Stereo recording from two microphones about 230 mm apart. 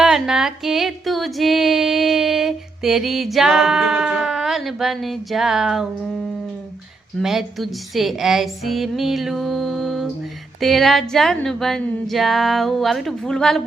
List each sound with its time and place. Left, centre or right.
0.0 s music: centre
7.2 s a woman's voice: centre